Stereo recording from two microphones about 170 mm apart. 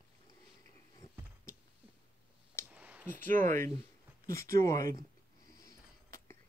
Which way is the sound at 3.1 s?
50° right (ahead or behind).